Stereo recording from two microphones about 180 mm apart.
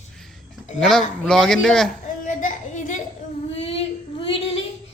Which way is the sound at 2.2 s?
45° left (ahead or behind).